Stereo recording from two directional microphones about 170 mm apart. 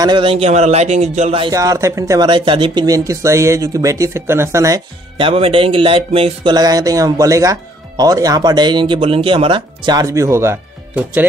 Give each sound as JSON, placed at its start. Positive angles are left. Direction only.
{"t": 0.0, "sound": "speech", "side_deg": -30}
{"t": 1.4, "sound": "speech", "side_deg": -20}
{"t": 5.1, "sound": "speech", "side_deg": -30}